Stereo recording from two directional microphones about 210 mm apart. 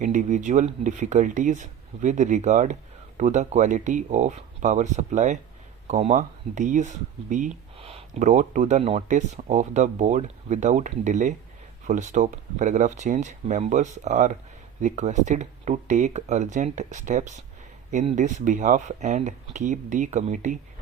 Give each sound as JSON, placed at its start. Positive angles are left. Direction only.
{"t": 0.0, "sound": "speech", "side_deg": -35}